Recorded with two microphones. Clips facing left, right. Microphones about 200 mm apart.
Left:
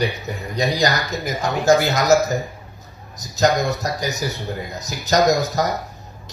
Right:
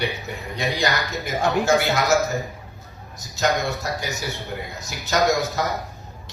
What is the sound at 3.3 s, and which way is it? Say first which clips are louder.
Speech: left 4 dB; 40° left (ahead or behind).